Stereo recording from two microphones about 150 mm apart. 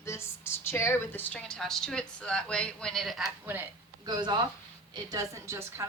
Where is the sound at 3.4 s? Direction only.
15° right (ahead or behind).